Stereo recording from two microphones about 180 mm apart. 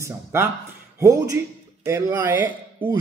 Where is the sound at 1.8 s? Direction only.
15° right (ahead or behind).